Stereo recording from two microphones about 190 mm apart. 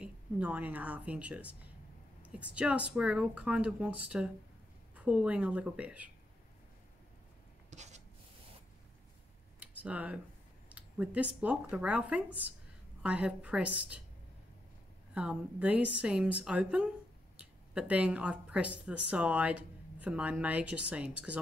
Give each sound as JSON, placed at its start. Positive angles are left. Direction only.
{"t": 0.0, "sound": "speech", "side_deg": -10}
{"t": 7.7, "sound": "writing", "side_deg": -35}
{"t": 9.6, "sound": "a sound", "side_deg": -5}
{"t": 10.7, "sound": "speech", "side_deg": -5}
{"t": 15.1, "sound": "speech", "side_deg": -5}